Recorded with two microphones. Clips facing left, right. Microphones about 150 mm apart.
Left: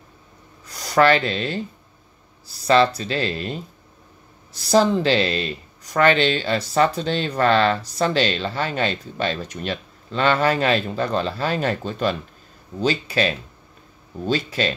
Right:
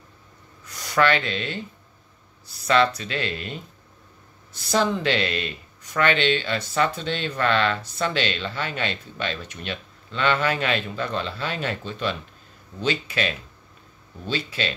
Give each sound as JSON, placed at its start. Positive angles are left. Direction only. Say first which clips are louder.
{"t": 0.7, "sound": "speech", "louder": "left 5 dB", "side_deg": 35}
{"t": 4.6, "sound": "speech", "louder": "left 6 dB", "side_deg": 35}